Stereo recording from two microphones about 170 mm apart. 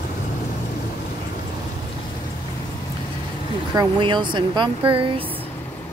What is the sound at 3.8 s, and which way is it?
Speech, 25° right (ahead or behind).